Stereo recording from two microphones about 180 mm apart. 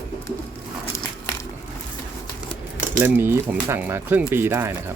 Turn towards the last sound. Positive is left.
turn(degrees=-15)  # may be behind; listen again after turning